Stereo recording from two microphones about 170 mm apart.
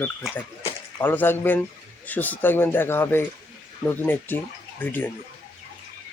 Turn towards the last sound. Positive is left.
turn(degrees=10)  # may be behind; listen again after turning